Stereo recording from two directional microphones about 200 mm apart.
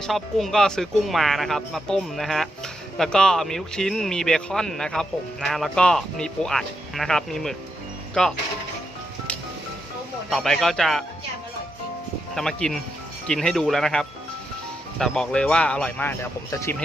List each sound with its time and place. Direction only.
0.0 s speech: centre (ahead or behind)
10.2 s speech: centre (ahead or behind)
12.3 s speech: centre (ahead or behind)